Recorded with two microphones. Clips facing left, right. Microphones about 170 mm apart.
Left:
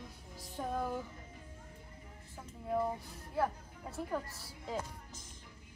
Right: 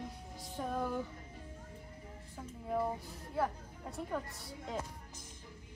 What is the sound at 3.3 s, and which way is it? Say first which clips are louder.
A woman's voice: left 1 dB; centre (ahead or behind).